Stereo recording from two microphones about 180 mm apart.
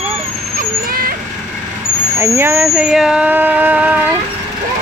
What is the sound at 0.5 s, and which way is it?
Vehicle, 55° right (ahead or behind).